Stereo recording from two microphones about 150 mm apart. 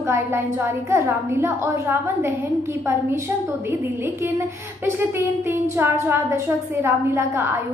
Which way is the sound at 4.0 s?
15° right (ahead or behind).